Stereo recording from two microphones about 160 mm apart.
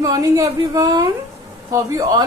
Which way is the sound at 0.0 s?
20° right (ahead or behind).